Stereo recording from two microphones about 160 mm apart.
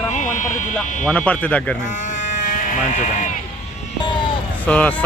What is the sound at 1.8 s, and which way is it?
Sheep, 50° left (ahead or behind).